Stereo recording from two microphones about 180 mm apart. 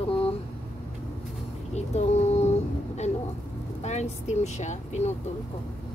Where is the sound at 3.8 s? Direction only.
40° left (ahead or behind).